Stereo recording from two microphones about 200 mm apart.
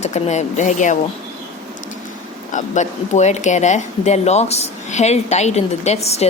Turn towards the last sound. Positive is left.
turn(degrees=30)  # may be behind; listen again after turning